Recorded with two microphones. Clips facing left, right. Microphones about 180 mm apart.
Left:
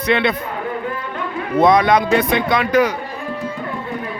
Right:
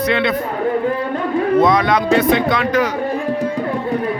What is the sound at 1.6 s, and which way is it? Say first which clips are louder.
Speech: left 1 dB; 15° left (ahead or behind).